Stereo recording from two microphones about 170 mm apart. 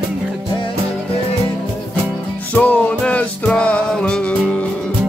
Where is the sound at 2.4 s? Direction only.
10° left (ahead or behind).